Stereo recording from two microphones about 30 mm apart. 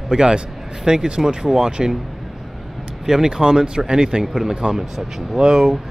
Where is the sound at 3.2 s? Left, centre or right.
Right.